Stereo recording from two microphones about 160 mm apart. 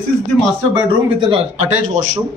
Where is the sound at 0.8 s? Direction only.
30° right (ahead or behind).